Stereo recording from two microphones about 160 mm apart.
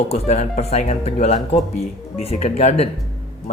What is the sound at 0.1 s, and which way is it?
Speech, 45° left (ahead or behind).